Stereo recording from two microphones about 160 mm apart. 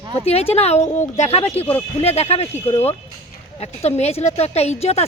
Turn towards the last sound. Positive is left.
turn(degrees=40)  # may be behind; listen again after turning